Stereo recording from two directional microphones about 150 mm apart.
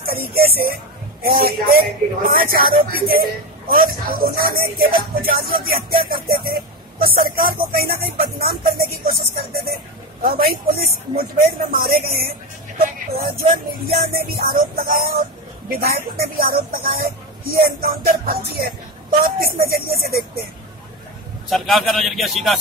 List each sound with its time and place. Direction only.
0.0 s speech: 85° right
7.7 s music: 90° right
10.2 s speech: 80° right
14.1 s speech: 80° right
21.5 s speech: centre (ahead or behind)